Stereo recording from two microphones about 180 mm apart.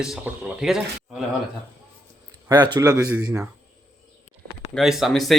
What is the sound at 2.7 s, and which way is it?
Speech, 20° right (ahead or behind).